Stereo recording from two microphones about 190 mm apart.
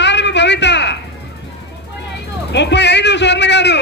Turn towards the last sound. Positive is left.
turn(degrees=65)  # may be behind; listen again after turning